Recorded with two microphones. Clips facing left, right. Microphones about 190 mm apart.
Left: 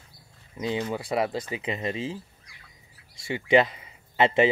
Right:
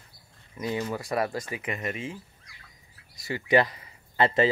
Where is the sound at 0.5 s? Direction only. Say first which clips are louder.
Left 2 dB; 15° left (ahead or behind).